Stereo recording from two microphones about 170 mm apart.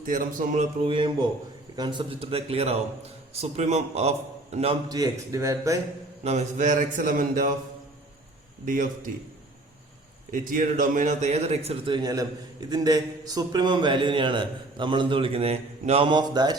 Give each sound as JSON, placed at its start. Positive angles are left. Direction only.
{"t": 0.0, "sound": "a man's voice", "side_deg": -55}
{"t": 0.9, "sound": "a man's voice", "side_deg": -30}
{"t": 4.9, "sound": "a man's voice", "side_deg": -20}
{"t": 6.2, "sound": "a man's voice", "side_deg": -45}
{"t": 8.6, "sound": "a man's voice", "side_deg": -50}
{"t": 10.3, "sound": "a man's voice", "side_deg": -50}
{"t": 12.0, "sound": "a man's voice", "side_deg": -25}